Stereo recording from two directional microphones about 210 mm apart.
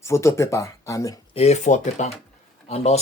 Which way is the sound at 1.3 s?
30° left (ahead or behind).